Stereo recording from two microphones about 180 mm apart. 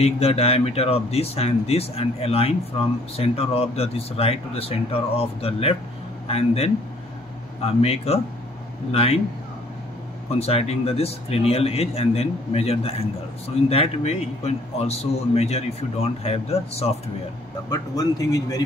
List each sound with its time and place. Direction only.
0.0 s a man's voice: 35° left (ahead or behind)
10.4 s a man's voice: 35° left (ahead or behind)
17.6 s a man's voice: 20° left (ahead or behind)